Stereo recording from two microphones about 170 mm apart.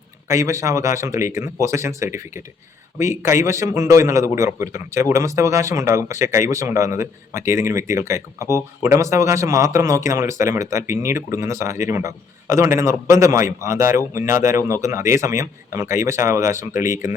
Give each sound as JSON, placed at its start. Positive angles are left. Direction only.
{"t": 0.3, "sound": "a man's voice", "side_deg": -15}